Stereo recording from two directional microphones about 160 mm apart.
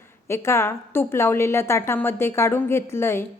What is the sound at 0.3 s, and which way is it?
A woman's voice, 15° left (ahead or behind).